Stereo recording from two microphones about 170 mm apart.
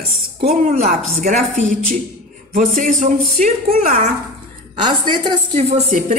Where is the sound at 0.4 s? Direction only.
40° right (ahead or behind).